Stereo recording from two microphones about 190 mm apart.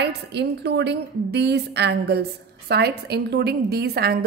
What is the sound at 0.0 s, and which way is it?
A woman's voice, 60° right (ahead or behind).